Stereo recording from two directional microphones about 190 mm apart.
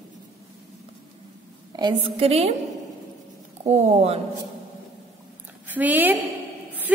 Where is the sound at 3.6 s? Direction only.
35° right (ahead or behind).